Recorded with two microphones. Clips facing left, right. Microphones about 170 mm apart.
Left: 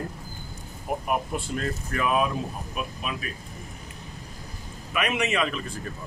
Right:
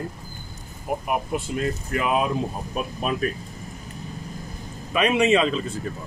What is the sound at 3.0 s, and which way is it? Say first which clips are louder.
Speech: right 8 dB; 40° right (ahead or behind).